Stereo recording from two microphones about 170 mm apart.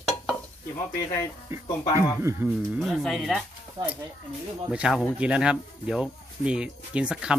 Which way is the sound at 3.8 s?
30° right (ahead or behind).